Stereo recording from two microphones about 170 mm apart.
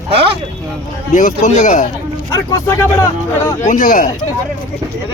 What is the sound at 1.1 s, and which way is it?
Speech, 45° left (ahead or behind).